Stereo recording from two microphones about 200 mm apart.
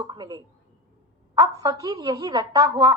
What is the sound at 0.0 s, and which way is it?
A woman's voice, 20° right (ahead or behind).